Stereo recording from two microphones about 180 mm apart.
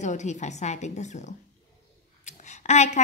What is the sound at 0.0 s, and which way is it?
A woman's voice, 40° left (ahead or behind).